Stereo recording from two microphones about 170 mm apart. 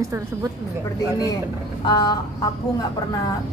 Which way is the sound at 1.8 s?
25° left (ahead or behind).